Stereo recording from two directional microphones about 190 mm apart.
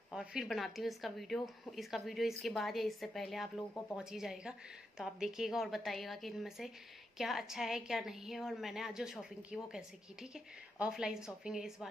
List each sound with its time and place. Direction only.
0.1 s speech: 5° right (ahead or behind)